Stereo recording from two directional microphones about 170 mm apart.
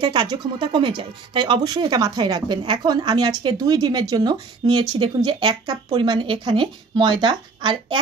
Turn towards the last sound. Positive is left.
turn(degrees=-25)  # may be behind; listen again after turning